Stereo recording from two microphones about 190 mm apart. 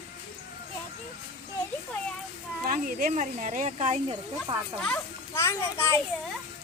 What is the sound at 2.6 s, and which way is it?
Speech, 45° right (ahead or behind).